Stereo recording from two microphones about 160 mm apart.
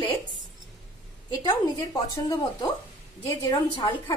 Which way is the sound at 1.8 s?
20° left (ahead or behind).